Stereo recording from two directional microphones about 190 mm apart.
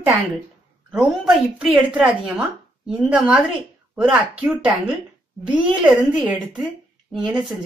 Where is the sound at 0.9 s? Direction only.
5° right (ahead or behind).